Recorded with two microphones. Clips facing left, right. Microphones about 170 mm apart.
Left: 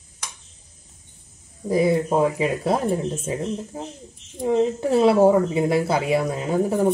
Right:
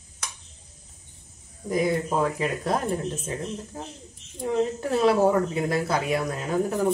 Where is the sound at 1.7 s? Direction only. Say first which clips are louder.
Left 5 dB; 30° left (ahead or behind).